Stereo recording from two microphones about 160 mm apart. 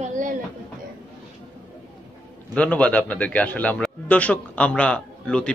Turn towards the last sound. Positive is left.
turn(degrees=5)  # may be behind; listen again after turning